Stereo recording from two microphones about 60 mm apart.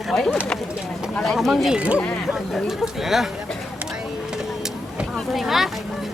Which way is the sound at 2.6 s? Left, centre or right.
Centre.